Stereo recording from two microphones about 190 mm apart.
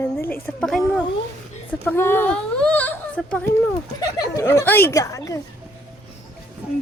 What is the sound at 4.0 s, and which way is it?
Speech, 20° left (ahead or behind).